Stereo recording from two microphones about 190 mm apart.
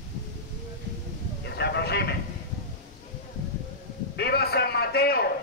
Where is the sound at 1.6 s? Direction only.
60° left (ahead or behind).